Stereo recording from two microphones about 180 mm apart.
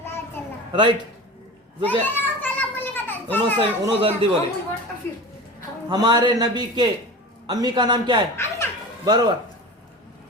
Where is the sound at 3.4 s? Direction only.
25° right (ahead or behind).